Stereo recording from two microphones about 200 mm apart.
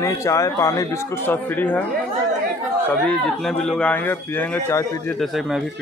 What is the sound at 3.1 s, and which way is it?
A man's voice, 5° left (ahead or behind).